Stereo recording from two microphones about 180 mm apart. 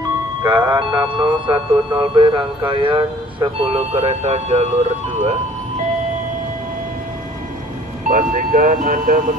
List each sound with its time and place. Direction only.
0.4 s speech: 25° right (ahead or behind)
8.1 s speech: 50° right (ahead or behind)